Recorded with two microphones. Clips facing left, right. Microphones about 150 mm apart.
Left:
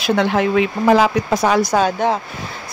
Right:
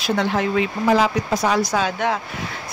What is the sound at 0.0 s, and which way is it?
Speech, 65° left (ahead or behind).